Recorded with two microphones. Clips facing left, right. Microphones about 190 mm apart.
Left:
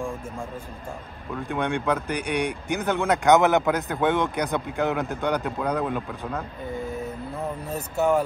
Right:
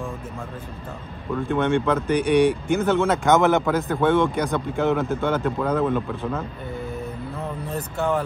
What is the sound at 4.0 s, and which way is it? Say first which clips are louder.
Speech: right 5 dB; 15° left (ahead or behind).